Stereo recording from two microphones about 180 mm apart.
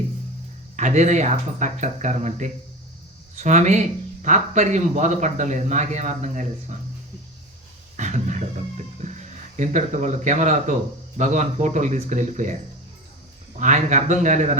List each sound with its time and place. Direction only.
0.8 s speech: 40° right (ahead or behind)
7.9 s a sound: 40° right (ahead or behind)
11.2 s speech: 40° right (ahead or behind)
13.6 s speech: 40° right (ahead or behind)